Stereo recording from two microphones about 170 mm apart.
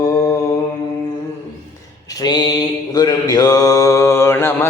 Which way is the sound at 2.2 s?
25° left (ahead or behind).